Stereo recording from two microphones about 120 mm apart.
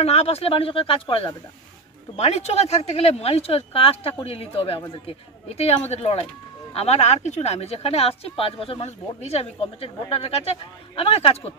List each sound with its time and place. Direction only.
0.0 s speech: 60° left (ahead or behind)
2.1 s speech: 60° left (ahead or behind)